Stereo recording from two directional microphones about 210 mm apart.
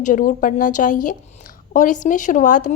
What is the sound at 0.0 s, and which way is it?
A woman's voice, 40° left (ahead or behind).